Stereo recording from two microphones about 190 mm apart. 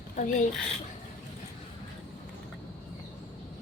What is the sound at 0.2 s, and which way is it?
Speech, 40° left (ahead or behind).